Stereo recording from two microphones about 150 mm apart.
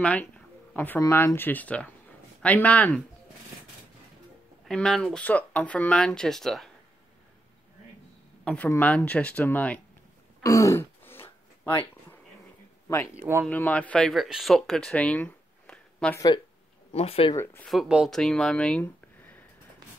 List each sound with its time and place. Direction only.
0.0 s speech: 10° left (ahead or behind)
4.6 s speech: 5° left (ahead or behind)
8.5 s speech: 10° left (ahead or behind)
10.4 s throat clearing: 20° left (ahead or behind)
12.8 s speech: 20° left (ahead or behind)
13.1 s speech: 15° right (ahead or behind)
13.5 s speech: 10° left (ahead or behind)
16.9 s speech: 40° left (ahead or behind)
17.6 s speech: 5° right (ahead or behind); by 19.4 s 10° left (ahead or behind)